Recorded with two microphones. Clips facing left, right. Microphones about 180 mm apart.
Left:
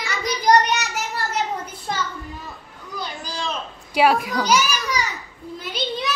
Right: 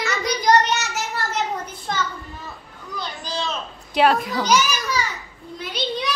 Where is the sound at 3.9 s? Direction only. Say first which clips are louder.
Even; 10° left (ahead or behind).